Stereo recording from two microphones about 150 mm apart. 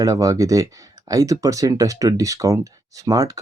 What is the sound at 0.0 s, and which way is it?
Speech, 20° right (ahead or behind).